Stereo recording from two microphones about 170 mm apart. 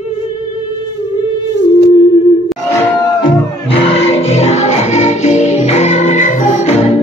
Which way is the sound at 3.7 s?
35° left (ahead or behind).